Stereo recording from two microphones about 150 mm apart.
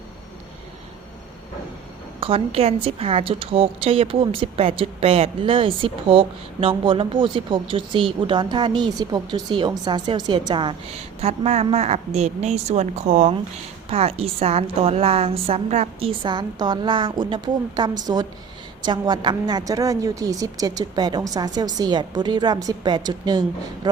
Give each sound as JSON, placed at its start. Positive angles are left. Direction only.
{"t": 2.2, "sound": "a woman's voice", "side_deg": -40}
{"t": 13.9, "sound": "a woman's voice", "side_deg": -40}